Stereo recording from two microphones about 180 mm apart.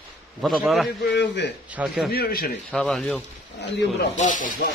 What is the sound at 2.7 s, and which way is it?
Speech, 5° left (ahead or behind).